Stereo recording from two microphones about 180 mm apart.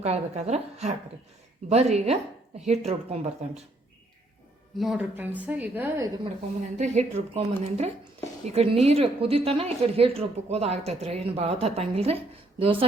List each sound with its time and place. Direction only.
0.0 s speech: 40° right (ahead or behind)
4.8 s a woman's voice: 5° right (ahead or behind)
6.7 s speech: 40° right (ahead or behind)